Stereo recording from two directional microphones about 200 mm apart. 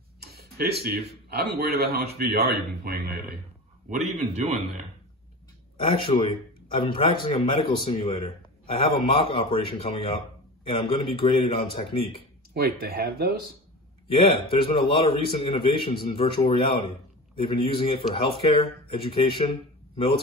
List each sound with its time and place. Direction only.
0.2 s speech: 50° right (ahead or behind)
4.0 s a man's voice: 30° right (ahead or behind)
5.8 s a man's voice: 30° left (ahead or behind)
12.5 s speech: 50° right (ahead or behind)
14.1 s a man's voice: 30° left (ahead or behind)